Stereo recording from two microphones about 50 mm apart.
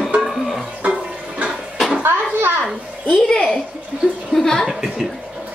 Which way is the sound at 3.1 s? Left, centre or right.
Centre.